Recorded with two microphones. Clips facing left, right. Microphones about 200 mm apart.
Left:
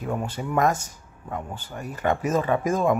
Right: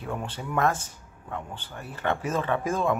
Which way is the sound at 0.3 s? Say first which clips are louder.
Left 2 dB; 10° left (ahead or behind).